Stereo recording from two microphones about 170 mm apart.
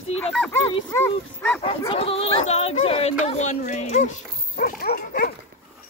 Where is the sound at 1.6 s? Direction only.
35° left (ahead or behind); by 5.3 s 55° left (ahead or behind).